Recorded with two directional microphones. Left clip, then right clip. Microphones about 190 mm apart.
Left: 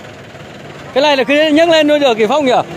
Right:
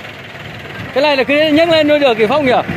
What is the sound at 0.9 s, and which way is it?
Speech, 20° left (ahead or behind).